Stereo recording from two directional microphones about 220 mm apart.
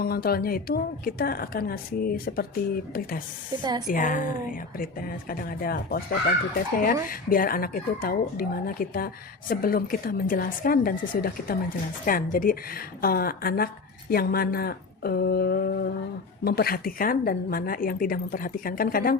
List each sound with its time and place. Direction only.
0.0 s a woman's voice: 45° left (ahead or behind)
3.6 s a woman's voice: 20° right (ahead or behind)
3.8 s a woman's voice: 40° left (ahead or behind)